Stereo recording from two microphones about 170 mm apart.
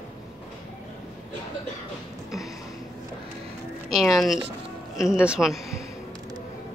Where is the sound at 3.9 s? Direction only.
Centre (ahead or behind).